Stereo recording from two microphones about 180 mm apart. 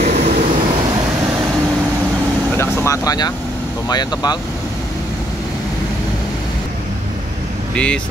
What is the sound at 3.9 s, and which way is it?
Speech, 20° left (ahead or behind).